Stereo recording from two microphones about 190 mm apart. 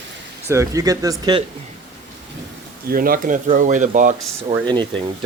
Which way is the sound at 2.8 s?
50° right (ahead or behind).